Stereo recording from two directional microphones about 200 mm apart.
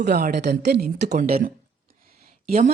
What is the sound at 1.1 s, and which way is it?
A woman's voice, 45° right (ahead or behind).